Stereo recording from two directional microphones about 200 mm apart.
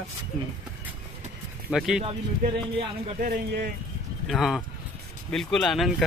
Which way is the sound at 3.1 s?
45° right (ahead or behind).